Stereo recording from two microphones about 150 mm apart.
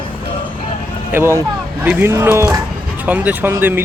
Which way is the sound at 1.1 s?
15° right (ahead or behind).